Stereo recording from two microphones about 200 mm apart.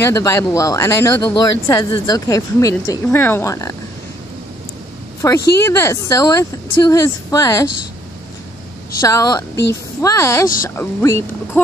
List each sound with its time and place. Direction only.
0.0 s speech: 15° left (ahead or behind)
5.2 s speech: 15° left (ahead or behind)
9.0 s speech: 15° left (ahead or behind)